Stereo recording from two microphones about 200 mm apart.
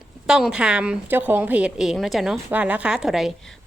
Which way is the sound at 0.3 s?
5° right (ahead or behind).